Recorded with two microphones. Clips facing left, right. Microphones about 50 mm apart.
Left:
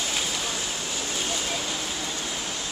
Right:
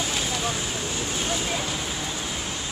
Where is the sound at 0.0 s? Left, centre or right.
Centre.